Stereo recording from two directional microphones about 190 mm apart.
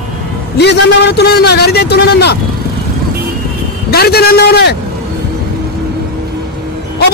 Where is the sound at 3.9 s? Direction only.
55° left (ahead or behind).